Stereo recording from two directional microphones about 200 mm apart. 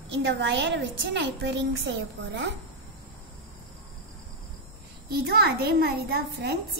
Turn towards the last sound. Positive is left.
turn(degrees=-55)  # may be behind; listen again after turning